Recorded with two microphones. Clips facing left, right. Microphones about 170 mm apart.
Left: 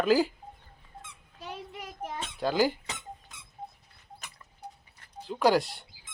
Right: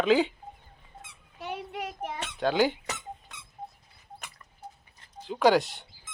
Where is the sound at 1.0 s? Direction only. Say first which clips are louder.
Right 5 dB; 70° right (ahead or behind).